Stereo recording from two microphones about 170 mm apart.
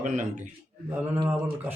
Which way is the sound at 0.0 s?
45° right (ahead or behind).